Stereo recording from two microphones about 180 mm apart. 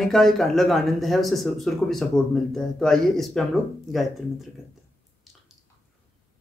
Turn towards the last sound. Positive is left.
turn(degrees=0)  # may be behind; listen again after turning